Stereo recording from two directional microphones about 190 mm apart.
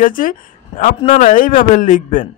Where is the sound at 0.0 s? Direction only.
45° left (ahead or behind).